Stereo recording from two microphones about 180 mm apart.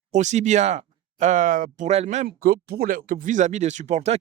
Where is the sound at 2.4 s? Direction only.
60° right (ahead or behind); by 4.1 s 40° right (ahead or behind).